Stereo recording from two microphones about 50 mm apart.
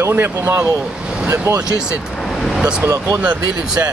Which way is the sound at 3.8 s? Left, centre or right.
Right.